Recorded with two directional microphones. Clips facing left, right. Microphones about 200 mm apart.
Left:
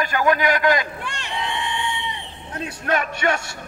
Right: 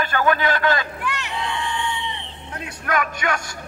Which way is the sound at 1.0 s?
30° left (ahead or behind).